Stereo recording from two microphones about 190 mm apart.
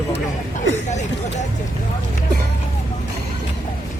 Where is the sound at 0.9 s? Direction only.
40° left (ahead or behind).